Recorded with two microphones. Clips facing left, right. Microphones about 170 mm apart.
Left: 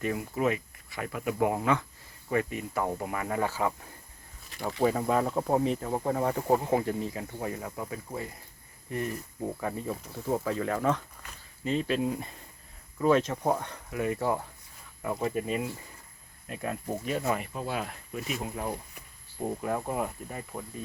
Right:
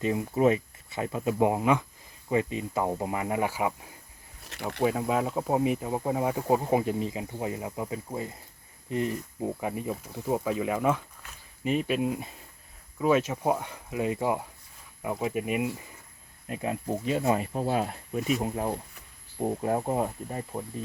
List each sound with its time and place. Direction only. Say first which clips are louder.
0.0 s speech: right 5 dB; 25° right (ahead or behind)
17.4 s speech: right 6 dB; 35° right (ahead or behind)